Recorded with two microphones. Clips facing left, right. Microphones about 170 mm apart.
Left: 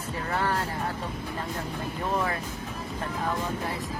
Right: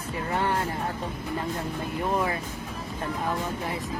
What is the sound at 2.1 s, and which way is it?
Music, 15° right (ahead or behind).